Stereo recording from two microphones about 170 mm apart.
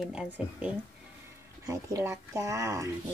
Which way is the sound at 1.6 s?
20° right (ahead or behind).